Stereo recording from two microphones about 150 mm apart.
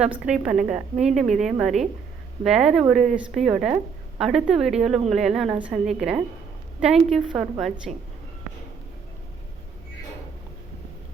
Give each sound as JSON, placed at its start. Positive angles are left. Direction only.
{"t": 0.0, "sound": "a woman's voice", "side_deg": -5}
{"t": 7.9, "sound": "speech", "side_deg": -50}